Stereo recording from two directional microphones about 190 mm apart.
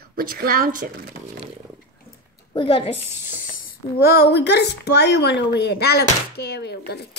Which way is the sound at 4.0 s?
55° left (ahead or behind).